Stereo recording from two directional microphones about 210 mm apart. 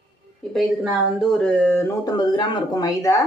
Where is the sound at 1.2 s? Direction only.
5° left (ahead or behind).